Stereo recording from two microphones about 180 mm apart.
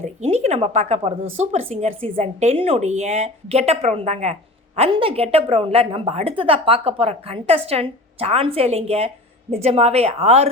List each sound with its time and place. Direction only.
0.0 s a woman's voice: 35° right (ahead or behind)